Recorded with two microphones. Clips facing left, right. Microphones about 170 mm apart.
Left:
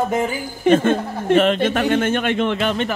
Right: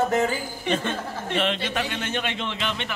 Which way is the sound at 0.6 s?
50° left (ahead or behind).